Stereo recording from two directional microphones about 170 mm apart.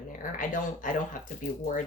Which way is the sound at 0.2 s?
50° left (ahead or behind).